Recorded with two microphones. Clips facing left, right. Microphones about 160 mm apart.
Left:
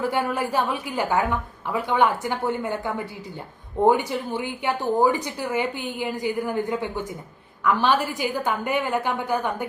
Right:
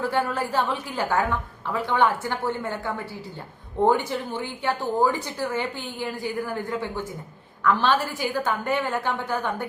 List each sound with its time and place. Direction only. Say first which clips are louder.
0.0 s a woman's voice: left 1 dB; 15° left (ahead or behind)